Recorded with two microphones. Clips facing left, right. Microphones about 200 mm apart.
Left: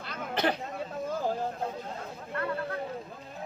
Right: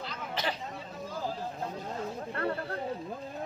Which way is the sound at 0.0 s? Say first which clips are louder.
Left 5 dB; 55° left (ahead or behind).